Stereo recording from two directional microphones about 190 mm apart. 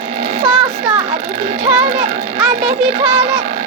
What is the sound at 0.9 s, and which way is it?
Speech, 30° right (ahead or behind).